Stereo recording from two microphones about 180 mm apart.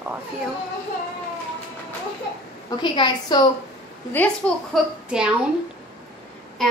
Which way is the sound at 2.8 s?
25° left (ahead or behind).